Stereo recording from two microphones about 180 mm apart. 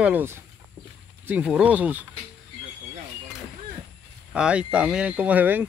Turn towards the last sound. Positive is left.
turn(degrees=-10)  # may be behind; listen again after turning